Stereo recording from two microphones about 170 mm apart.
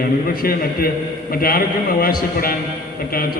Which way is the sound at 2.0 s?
60° left (ahead or behind).